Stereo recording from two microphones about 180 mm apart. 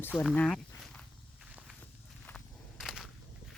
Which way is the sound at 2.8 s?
Centre (ahead or behind).